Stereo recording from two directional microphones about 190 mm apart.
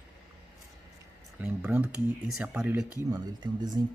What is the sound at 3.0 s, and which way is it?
Speech, 20° right (ahead or behind).